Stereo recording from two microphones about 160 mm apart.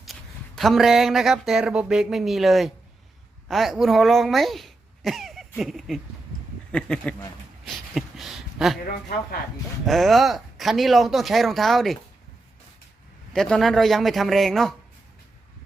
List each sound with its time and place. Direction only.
0.0 s speech: centre (ahead or behind)
8.8 s speech: 65° left (ahead or behind)
9.8 s speech: centre (ahead or behind)
13.3 s speech: centre (ahead or behind)